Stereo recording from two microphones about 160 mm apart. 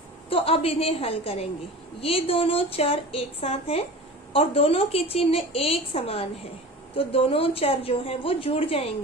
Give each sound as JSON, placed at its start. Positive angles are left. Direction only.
{"t": 0.3, "sound": "a woman's voice", "side_deg": 35}